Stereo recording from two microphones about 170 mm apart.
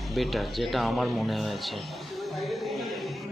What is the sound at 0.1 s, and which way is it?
Speech, centre (ahead or behind).